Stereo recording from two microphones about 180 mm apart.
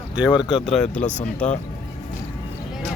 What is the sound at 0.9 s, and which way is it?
Speech, 40° left (ahead or behind).